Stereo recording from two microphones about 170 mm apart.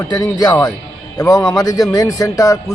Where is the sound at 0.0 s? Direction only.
25° left (ahead or behind).